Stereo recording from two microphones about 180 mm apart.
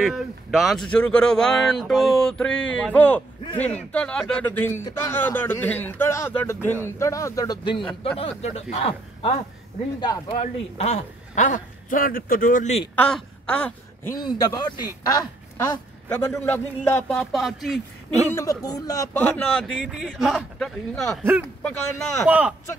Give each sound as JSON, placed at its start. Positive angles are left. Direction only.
{"t": 0.0, "sound": "a man's voice", "side_deg": 0}
{"t": 8.2, "sound": "a man's voice", "side_deg": 35}
{"t": 12.9, "sound": "speech", "side_deg": 10}
{"t": 14.1, "sound": "a man's voice", "side_deg": 20}
{"t": 18.3, "sound": "a man's voice", "side_deg": 20}
{"t": 21.2, "sound": "speech", "side_deg": -10}